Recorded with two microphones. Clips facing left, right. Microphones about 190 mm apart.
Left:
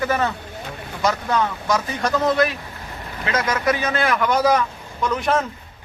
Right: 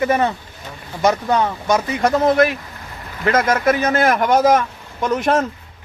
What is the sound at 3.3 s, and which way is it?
A man's voice, 50° right (ahead or behind).